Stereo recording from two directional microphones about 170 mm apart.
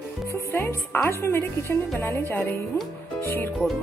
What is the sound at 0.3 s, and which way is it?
Speech, 15° left (ahead or behind).